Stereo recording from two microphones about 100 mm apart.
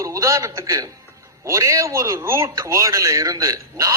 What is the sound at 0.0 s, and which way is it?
A man's voice, 30° right (ahead or behind).